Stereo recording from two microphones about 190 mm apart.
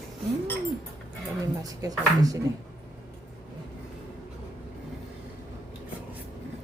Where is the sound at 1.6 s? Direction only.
20° right (ahead or behind).